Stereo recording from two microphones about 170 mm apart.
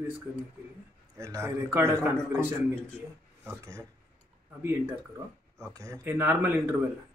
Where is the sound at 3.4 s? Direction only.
15° right (ahead or behind).